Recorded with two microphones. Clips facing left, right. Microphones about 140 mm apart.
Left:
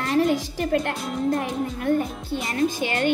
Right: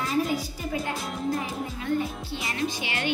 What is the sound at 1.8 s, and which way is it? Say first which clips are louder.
Speech: left 4 dB; 50° left (ahead or behind).